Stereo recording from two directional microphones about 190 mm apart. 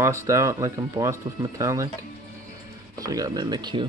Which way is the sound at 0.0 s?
15° right (ahead or behind).